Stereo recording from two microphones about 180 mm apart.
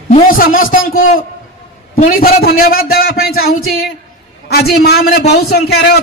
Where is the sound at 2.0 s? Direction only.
55° left (ahead or behind).